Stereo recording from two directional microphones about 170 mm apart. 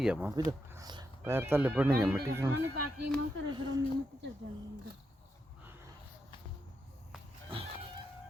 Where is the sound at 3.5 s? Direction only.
25° right (ahead or behind).